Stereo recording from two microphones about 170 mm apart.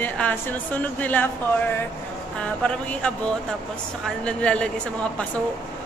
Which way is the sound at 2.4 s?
5° left (ahead or behind).